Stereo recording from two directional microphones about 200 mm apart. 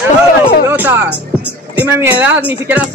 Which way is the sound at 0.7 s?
10° right (ahead or behind).